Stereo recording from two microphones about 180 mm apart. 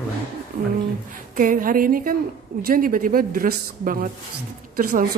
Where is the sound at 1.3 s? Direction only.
50° right (ahead or behind).